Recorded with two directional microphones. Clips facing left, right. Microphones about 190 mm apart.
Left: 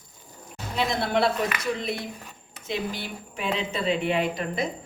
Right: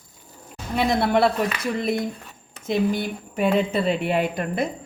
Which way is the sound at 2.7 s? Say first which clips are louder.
Right 8 dB; 50° right (ahead or behind).